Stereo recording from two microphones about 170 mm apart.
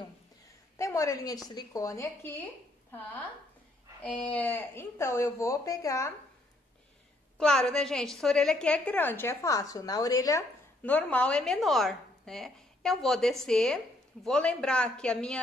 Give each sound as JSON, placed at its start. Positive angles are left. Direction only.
{"t": 0.7, "sound": "a woman's voice", "side_deg": 20}
{"t": 7.3, "sound": "a woman's voice", "side_deg": 5}
{"t": 10.8, "sound": "a woman's voice", "side_deg": 10}